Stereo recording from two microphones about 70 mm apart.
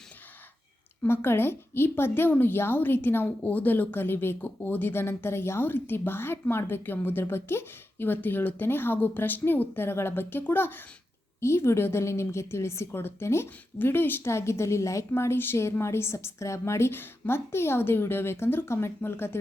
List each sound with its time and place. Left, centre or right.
1.0 s a woman's voice: left
11.3 s a woman's voice: left